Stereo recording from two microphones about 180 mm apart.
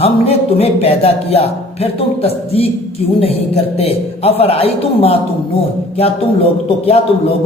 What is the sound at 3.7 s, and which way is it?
Speech, 35° left (ahead or behind).